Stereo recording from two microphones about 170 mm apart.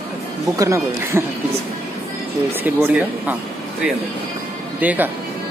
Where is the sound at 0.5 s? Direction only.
15° right (ahead or behind).